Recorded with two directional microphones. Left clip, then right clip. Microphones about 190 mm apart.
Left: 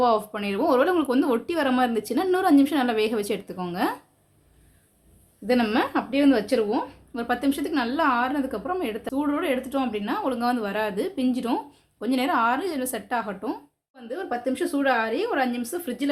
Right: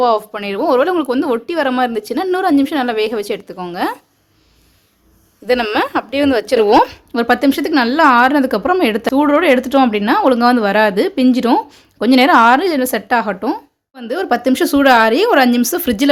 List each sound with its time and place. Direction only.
0.0 s a woman's voice: 35° right (ahead or behind)
5.5 s speech: 55° right (ahead or behind)
7.1 s a woman's voice: 35° right (ahead or behind)
13.9 s speech: 55° right (ahead or behind)